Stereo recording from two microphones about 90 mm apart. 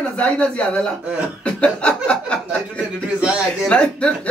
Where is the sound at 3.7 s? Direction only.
10° left (ahead or behind).